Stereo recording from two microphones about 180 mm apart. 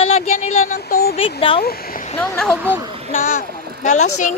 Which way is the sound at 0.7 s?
60° left (ahead or behind).